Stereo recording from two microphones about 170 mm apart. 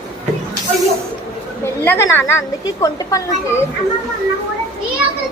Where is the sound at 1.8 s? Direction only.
15° left (ahead or behind).